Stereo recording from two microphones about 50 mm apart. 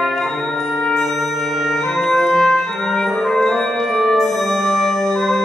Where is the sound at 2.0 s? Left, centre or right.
Centre.